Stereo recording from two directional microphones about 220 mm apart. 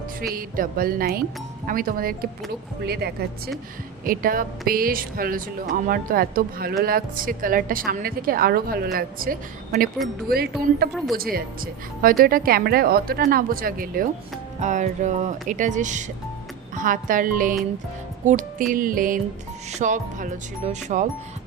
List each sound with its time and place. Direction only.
0.2 s speech: 40° right (ahead or behind)